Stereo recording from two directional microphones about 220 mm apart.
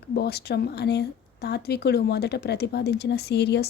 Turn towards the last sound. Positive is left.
turn(degrees=50)  # may be behind; listen again after turning